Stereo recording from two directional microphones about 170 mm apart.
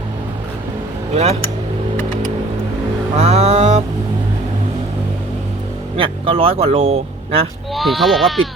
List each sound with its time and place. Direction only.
1.1 s speech: 40° right (ahead or behind)
3.2 s music: 40° right (ahead or behind)
6.0 s speech: 30° right (ahead or behind)
7.7 s speech: centre (ahead or behind)